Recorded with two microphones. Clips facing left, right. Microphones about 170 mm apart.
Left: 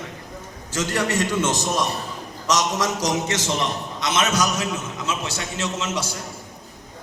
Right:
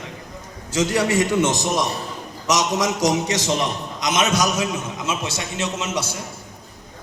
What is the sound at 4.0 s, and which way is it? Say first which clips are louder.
A man's voice: right 2 dB; 15° right (ahead or behind).